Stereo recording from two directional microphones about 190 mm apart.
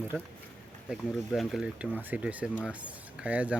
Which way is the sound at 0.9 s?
Centre (ahead or behind).